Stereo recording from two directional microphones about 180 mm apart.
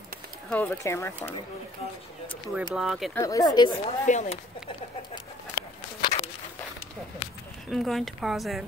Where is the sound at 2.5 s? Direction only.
5° right (ahead or behind).